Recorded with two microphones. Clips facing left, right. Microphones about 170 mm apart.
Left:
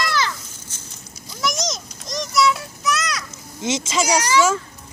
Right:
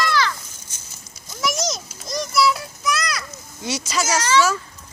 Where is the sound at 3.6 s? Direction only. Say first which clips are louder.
Left 3 dB; 25° left (ahead or behind).